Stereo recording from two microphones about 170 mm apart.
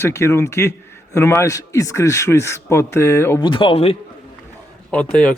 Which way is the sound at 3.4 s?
30° left (ahead or behind).